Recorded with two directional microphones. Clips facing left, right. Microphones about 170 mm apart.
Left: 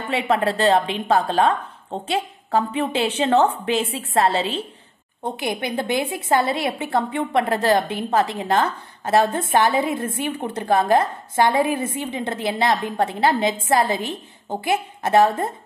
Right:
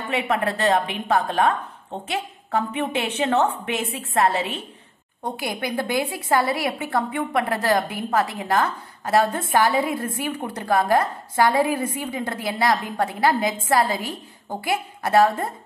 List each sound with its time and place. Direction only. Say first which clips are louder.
0.1 s a woman's voice: left 3 dB; 30° left (ahead or behind)